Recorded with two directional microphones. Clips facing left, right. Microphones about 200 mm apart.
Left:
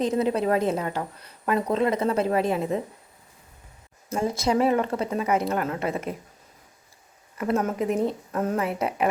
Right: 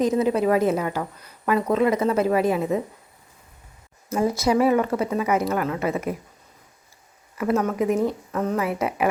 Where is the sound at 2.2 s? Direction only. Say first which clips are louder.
Right 3 dB; 5° right (ahead or behind).